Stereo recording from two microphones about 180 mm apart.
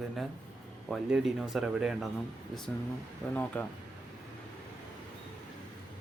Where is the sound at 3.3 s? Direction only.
10° left (ahead or behind).